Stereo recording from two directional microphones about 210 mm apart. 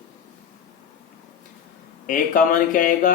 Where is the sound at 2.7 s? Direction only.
40° left (ahead or behind).